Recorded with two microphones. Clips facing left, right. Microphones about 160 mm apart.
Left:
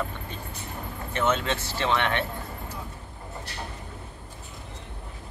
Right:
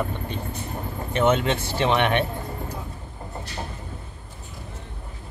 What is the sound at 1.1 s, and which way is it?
Speech, 20° right (ahead or behind).